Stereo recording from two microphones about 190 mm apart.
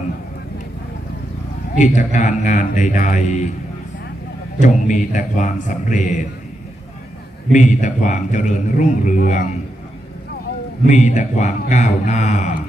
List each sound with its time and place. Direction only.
1.8 s a man's voice: 40° left (ahead or behind)
4.6 s a man's voice: 40° left (ahead or behind)
7.5 s a man's voice: 40° left (ahead or behind)
10.9 s a man's voice: 40° left (ahead or behind)